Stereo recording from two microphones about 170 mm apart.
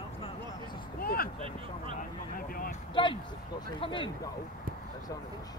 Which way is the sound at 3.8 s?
30° left (ahead or behind).